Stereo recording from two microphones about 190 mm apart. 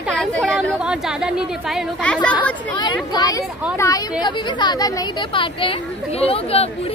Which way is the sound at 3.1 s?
20° left (ahead or behind).